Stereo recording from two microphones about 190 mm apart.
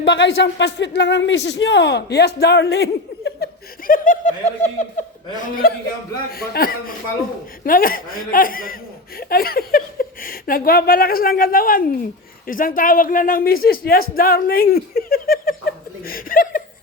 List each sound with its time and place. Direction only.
0.0 s speech: 70° left (ahead or behind); by 15.5 s 50° left (ahead or behind)
16.0 s chuckle: 50° left (ahead or behind)